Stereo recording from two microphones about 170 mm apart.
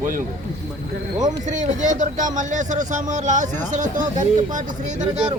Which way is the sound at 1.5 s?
45° right (ahead or behind).